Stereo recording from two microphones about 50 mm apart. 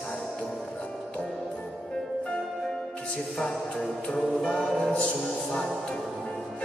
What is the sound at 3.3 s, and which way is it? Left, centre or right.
Music, centre.